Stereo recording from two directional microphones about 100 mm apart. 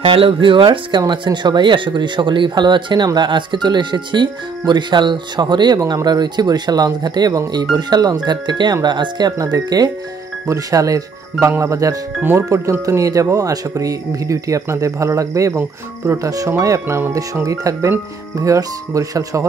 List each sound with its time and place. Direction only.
0.0 s speech: 60° right (ahead or behind); by 12.0 s 35° right (ahead or behind)
12.2 s speech: 20° right (ahead or behind)